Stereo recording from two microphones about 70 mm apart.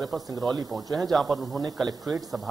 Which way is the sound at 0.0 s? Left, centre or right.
Centre.